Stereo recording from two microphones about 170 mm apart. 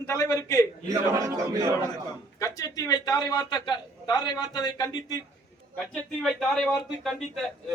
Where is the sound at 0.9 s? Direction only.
20° right (ahead or behind).